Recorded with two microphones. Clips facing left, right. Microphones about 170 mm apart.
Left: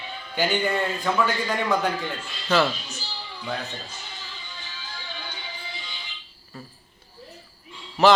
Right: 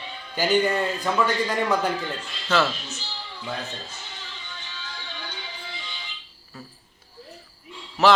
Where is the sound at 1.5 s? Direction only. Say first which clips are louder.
Even; 5° right (ahead or behind).